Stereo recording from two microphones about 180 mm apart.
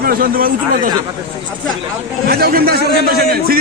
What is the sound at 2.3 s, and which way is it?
A man's voice, 60° right (ahead or behind).